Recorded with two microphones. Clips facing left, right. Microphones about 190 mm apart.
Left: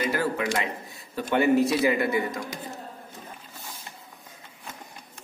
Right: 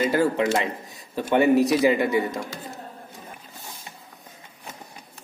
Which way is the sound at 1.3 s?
20° right (ahead or behind).